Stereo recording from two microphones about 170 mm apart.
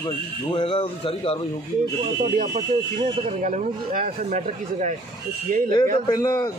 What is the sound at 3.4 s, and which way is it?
Speech, 45° right (ahead or behind).